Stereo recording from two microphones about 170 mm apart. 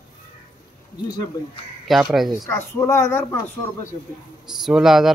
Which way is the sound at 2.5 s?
15° left (ahead or behind).